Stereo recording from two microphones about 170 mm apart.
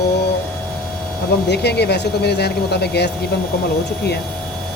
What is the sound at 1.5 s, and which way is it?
Speech, 75° left (ahead or behind).